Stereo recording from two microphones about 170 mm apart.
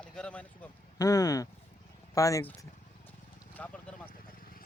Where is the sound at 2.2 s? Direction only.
20° left (ahead or behind).